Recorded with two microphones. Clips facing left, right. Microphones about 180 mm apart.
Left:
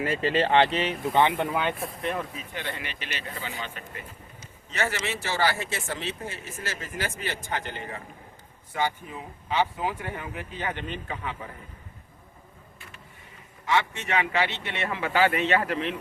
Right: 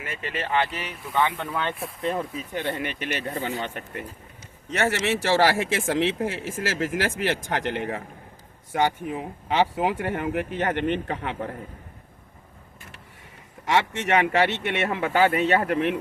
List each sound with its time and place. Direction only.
0.0 s speech: 30° left (ahead or behind)
1.5 s speech: 15° left (ahead or behind)
1.7 s speech: centre (ahead or behind)
2.0 s speech: 30° right (ahead or behind)
2.5 s speech: 45° right (ahead or behind)
3.6 s speech: 65° right (ahead or behind)
13.7 s speech: 75° right (ahead or behind); by 15.2 s 50° right (ahead or behind)
15.3 s speech: 40° right (ahead or behind); by 16.0 s 55° right (ahead or behind)